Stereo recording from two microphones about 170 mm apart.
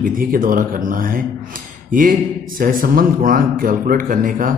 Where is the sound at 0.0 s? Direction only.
55° right (ahead or behind).